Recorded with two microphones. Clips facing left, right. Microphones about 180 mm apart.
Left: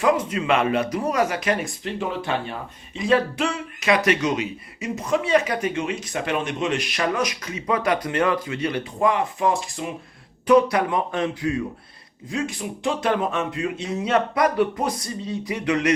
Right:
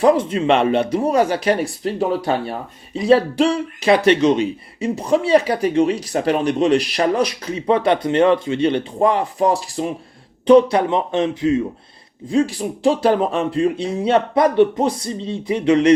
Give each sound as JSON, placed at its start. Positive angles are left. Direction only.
{"t": 0.0, "sound": "speech", "side_deg": -30}